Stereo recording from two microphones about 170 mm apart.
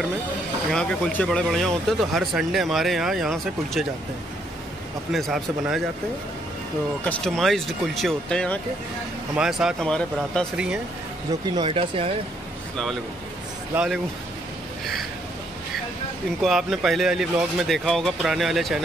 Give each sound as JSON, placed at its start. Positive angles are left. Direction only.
{"t": 0.7, "sound": "speech", "side_deg": 5}
{"t": 5.1, "sound": "speech", "side_deg": 0}
{"t": 7.1, "sound": "speech", "side_deg": 5}
{"t": 11.5, "sound": "speech", "side_deg": -30}
{"t": 16.3, "sound": "speech", "side_deg": 0}